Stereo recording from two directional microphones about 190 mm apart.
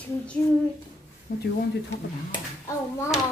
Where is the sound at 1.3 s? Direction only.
50° left (ahead or behind).